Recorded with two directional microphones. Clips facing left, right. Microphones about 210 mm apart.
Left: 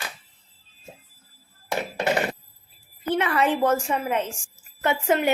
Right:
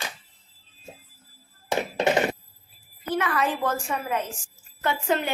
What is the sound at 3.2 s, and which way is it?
A woman's voice, 25° left (ahead or behind).